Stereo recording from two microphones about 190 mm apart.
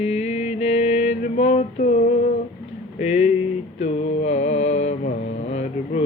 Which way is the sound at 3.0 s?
35° left (ahead or behind).